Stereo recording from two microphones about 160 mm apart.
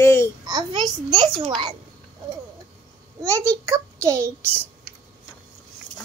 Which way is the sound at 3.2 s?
20° right (ahead or behind).